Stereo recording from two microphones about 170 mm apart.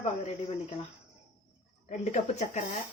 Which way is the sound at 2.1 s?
40° left (ahead or behind).